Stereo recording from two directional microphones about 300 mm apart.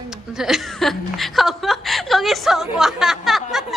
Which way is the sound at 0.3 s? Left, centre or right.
Centre.